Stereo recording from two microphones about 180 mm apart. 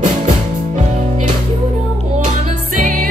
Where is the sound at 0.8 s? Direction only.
40° right (ahead or behind).